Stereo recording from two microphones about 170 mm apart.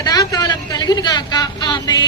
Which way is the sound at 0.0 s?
20° left (ahead or behind).